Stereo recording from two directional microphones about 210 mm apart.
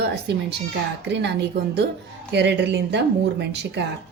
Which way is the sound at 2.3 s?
55° right (ahead or behind).